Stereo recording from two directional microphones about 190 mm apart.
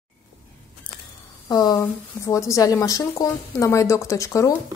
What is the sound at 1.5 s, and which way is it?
A woman's voice, 20° left (ahead or behind).